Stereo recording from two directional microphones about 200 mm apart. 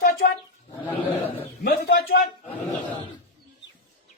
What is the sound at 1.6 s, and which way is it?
Speech, 50° left (ahead or behind).